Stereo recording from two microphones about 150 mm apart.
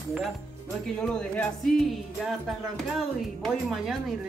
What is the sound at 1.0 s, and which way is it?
Speech, 5° left (ahead or behind).